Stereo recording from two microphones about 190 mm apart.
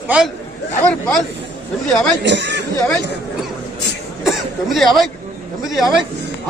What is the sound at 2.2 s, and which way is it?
Speech, 65° right (ahead or behind).